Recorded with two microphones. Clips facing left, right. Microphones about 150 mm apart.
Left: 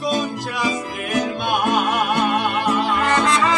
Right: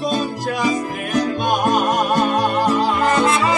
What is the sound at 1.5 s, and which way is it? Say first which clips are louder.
Music: right 1 dB; 45° right (ahead or behind).